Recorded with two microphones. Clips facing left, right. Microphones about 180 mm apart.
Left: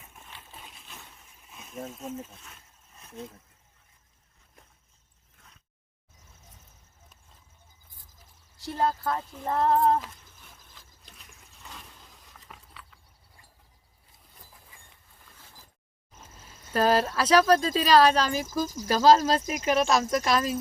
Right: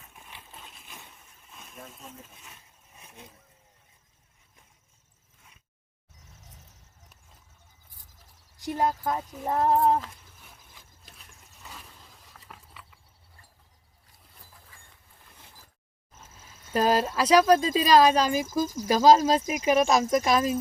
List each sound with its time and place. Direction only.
0.0 s a sound: centre (ahead or behind)
2.9 s a sound: 10° right (ahead or behind)
8.5 s speech: 15° right (ahead or behind)
10.4 s vehicle: 10° right (ahead or behind)
14.5 s dog: 15° left (ahead or behind)
16.7 s speech: 10° right (ahead or behind)